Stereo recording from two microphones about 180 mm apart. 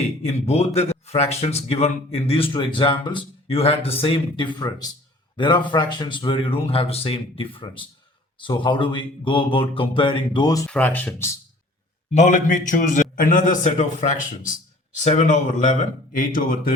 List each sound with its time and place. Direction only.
0.2 s a man's voice: 35° left (ahead or behind); by 10.7 s 20° left (ahead or behind)
10.7 s speech: 10° left (ahead or behind)
12.1 s a man's voice: 40° left (ahead or behind)